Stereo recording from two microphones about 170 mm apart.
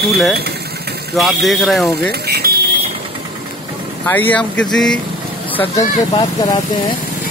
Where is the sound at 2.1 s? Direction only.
70° right (ahead or behind).